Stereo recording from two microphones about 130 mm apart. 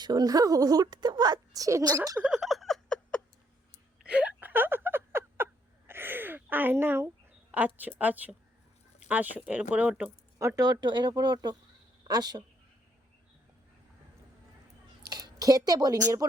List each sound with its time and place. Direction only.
0.0 s a woman's voice: 30° right (ahead or behind)
2.1 s a sound: 5° right (ahead or behind)
4.0 s whimper: 10° right (ahead or behind)
5.9 s a sound: 15° right (ahead or behind)
7.5 s speech: 15° right (ahead or behind)
10.3 s a woman's voice: 25° right (ahead or behind)
15.1 s a woman's voice: 30° right (ahead or behind)